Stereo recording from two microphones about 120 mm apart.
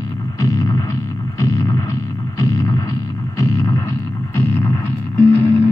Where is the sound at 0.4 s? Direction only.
30° left (ahead or behind).